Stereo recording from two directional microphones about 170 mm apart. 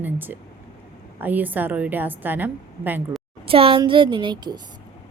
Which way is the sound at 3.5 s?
35° right (ahead or behind).